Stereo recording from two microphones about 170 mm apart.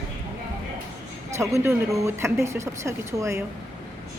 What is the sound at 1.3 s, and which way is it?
Speech, 15° right (ahead or behind).